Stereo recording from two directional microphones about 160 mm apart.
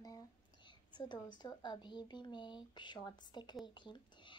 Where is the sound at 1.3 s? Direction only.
25° left (ahead or behind).